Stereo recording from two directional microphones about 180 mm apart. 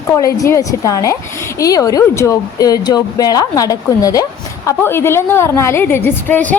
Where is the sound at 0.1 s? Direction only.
20° left (ahead or behind).